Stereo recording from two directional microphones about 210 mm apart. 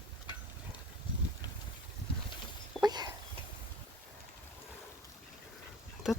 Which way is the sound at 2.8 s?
20° right (ahead or behind).